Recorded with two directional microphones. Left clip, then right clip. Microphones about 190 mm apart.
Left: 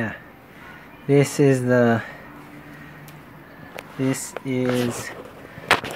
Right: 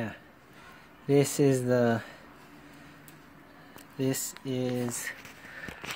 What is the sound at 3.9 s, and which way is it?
Speech, 15° right (ahead or behind).